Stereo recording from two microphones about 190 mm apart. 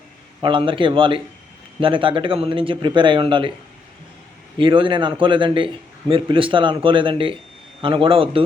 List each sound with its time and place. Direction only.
0.4 s a man's voice: 25° right (ahead or behind)
4.5 s a man's voice: 25° right (ahead or behind)